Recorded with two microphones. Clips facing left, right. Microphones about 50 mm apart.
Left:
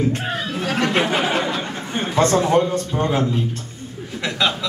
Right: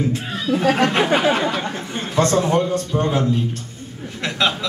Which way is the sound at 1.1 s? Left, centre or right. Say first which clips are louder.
Right 3 dB; right.